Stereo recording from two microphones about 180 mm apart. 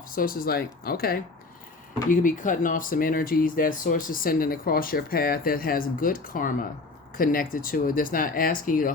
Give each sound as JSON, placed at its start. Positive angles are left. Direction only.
{"t": 0.1, "sound": "speech", "side_deg": 50}